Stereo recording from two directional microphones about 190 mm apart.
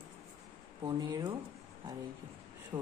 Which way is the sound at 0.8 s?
25° right (ahead or behind).